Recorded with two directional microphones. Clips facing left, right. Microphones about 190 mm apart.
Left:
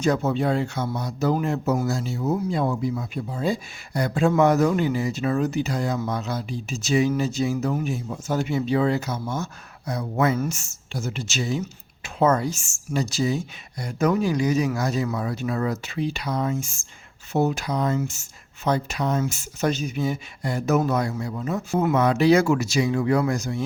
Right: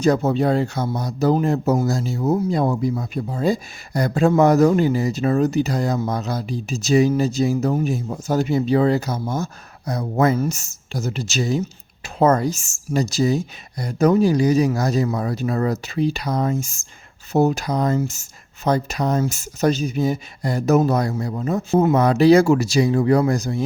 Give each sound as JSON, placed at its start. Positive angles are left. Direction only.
{"t": 0.0, "sound": "speech", "side_deg": -35}
{"t": 21.7, "sound": "speech", "side_deg": -25}
{"t": 21.9, "sound": "speech", "side_deg": -35}